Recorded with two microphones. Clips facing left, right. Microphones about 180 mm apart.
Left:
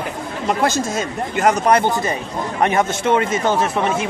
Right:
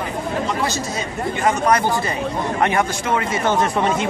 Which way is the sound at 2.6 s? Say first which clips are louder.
Left 4 dB; 25° left (ahead or behind).